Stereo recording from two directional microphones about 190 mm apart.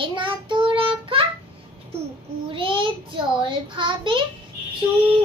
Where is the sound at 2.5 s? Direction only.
25° right (ahead or behind).